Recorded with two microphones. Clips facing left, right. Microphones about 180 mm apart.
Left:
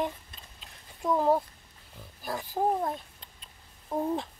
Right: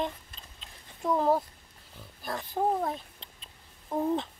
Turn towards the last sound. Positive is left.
turn(degrees=5)  # may be behind; listen again after turning